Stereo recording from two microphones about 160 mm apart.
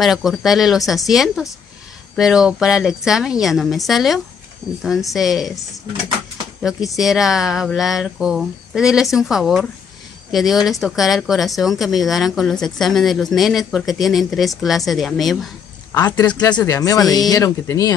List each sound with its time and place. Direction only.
0.0 s speech: centre (ahead or behind)
7.0 s speech: 5° right (ahead or behind)
16.3 s speech: 25° left (ahead or behind)